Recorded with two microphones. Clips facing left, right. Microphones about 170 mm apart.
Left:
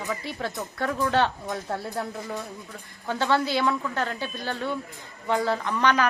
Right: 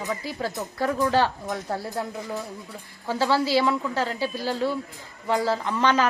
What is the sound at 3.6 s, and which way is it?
Speech, 15° right (ahead or behind).